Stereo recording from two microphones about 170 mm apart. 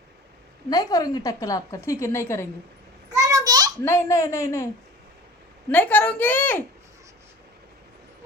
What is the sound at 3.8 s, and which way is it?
Speech, 15° left (ahead or behind).